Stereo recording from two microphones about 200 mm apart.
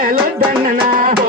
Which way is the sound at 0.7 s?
45° right (ahead or behind).